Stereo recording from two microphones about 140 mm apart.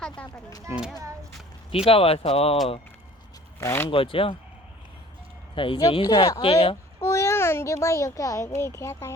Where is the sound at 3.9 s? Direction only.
40° left (ahead or behind).